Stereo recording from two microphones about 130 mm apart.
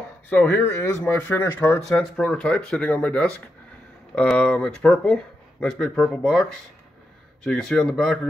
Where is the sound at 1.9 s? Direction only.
5° left (ahead or behind).